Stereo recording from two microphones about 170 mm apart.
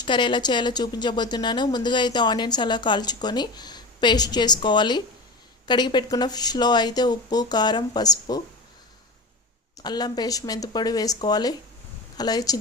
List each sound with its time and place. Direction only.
0.0 s speech: 25° left (ahead or behind)
9.8 s speech: 25° left (ahead or behind)